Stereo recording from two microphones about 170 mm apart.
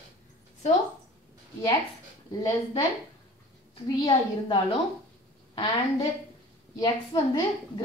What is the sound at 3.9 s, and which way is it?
Speech, 25° left (ahead or behind).